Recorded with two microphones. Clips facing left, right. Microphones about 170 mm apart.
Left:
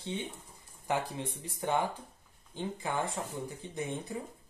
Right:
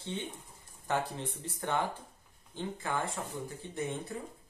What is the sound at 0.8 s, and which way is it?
Speech, 15° left (ahead or behind).